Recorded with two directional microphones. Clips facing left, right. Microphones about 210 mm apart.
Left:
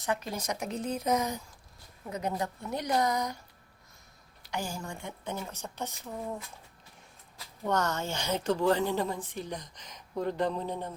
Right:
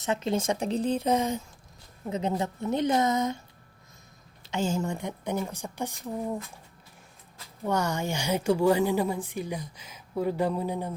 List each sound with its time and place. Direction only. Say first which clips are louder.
0.0 s speech: right 6 dB; 25° right (ahead or behind)
4.4 s a woman's voice: right 8 dB; 25° right (ahead or behind)
7.6 s a woman's voice: right 2 dB; 10° right (ahead or behind)